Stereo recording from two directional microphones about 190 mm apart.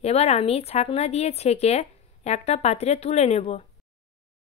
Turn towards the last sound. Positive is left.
turn(degrees=35)  # may be behind; listen again after turning